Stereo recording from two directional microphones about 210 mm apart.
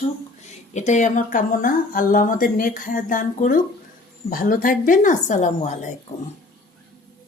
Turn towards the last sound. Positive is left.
turn(degrees=35)  # may be behind; listen again after turning